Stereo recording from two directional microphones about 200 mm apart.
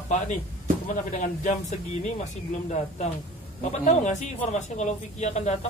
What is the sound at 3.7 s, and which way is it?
Speech, 35° left (ahead or behind).